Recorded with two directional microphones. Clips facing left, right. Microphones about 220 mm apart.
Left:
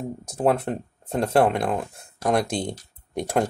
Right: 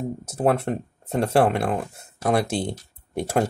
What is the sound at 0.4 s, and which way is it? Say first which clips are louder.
Speech: even; 5° right (ahead or behind).